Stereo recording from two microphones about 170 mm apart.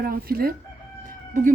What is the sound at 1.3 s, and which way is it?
Speech, 45° right (ahead or behind).